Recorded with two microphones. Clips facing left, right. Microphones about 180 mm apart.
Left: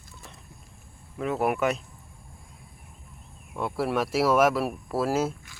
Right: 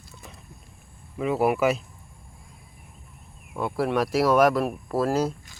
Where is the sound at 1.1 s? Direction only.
Centre (ahead or behind).